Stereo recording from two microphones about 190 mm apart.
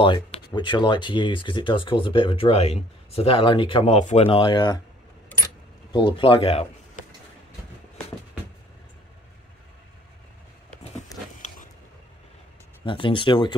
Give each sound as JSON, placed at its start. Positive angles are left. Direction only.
{"t": 0.0, "sound": "speech", "side_deg": 25}
{"t": 5.9, "sound": "speech", "side_deg": 25}
{"t": 12.8, "sound": "speech", "side_deg": 25}